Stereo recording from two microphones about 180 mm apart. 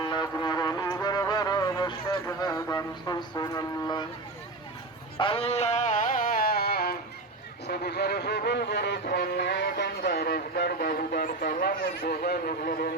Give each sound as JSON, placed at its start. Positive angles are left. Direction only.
{"t": 0.0, "sound": "music", "side_deg": 25}
{"t": 5.1, "sound": "music", "side_deg": 30}